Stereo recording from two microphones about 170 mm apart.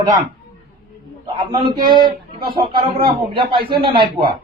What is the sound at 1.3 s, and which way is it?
Speech, 25° right (ahead or behind).